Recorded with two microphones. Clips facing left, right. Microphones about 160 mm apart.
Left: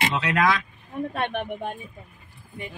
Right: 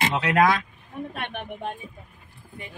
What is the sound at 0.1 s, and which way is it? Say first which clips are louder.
Speech: right 4 dB; 50° right (ahead or behind).